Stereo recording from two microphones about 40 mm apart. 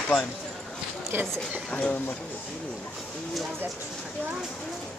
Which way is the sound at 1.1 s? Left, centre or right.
Right.